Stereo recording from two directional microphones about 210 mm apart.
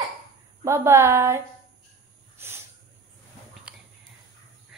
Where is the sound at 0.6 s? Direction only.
15° right (ahead or behind).